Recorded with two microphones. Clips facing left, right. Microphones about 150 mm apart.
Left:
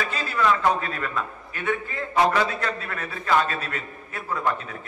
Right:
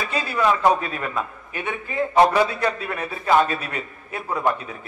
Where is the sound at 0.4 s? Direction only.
15° right (ahead or behind).